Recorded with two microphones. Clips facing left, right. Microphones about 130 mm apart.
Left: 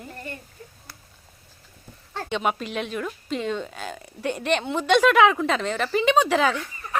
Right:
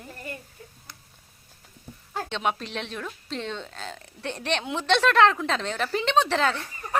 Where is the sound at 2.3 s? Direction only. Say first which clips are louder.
Left 4 dB; 5° left (ahead or behind).